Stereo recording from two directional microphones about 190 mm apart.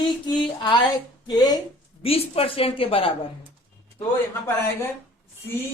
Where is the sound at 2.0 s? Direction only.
30° left (ahead or behind).